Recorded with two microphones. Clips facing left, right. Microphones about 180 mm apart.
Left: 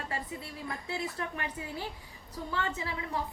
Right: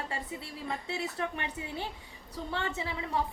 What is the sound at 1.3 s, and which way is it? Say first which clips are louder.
Speech: right 1 dB; 25° right (ahead or behind).